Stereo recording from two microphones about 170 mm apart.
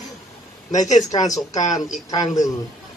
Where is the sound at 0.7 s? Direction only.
45° left (ahead or behind).